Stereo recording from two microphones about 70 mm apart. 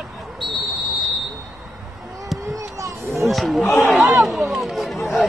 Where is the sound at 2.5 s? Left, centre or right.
Right.